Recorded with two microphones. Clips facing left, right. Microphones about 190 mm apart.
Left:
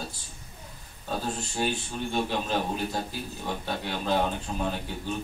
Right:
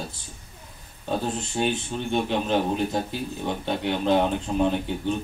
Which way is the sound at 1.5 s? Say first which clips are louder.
Right 4 dB; 20° right (ahead or behind).